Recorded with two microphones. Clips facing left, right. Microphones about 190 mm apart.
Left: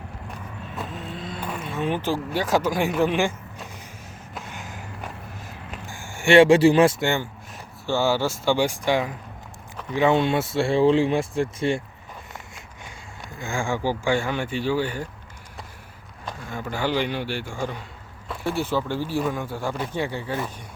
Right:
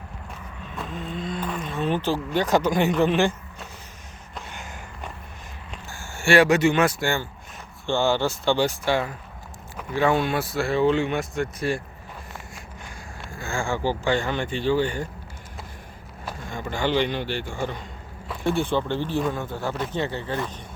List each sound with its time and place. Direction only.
0.8 s vehicle: centre (ahead or behind)
2.0 s speech: 10° left (ahead or behind)
4.4 s a sound: centre (ahead or behind)
5.8 s speech: 15° left (ahead or behind)
7.9 s speech: 5° left (ahead or behind); by 11.8 s 25° left (ahead or behind)
13.3 s speech: 15° left (ahead or behind)
16.5 s speech: 5° left (ahead or behind)